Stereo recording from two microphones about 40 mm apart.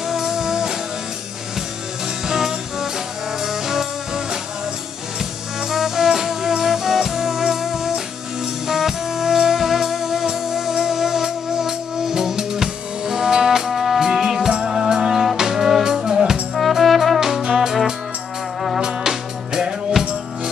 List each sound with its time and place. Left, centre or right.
0.1 s music: centre
2.2 s music: centre
5.6 s music: centre
16.8 s brass instrument: centre
17.4 s music: centre
18.8 s music: centre